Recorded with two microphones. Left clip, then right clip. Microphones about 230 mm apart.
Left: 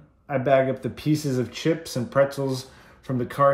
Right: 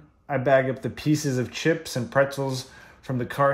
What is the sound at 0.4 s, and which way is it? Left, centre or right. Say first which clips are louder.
Speech: left 1 dB; centre.